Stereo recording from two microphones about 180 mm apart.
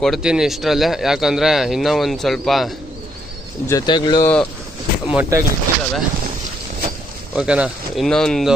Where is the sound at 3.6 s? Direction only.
20° left (ahead or behind).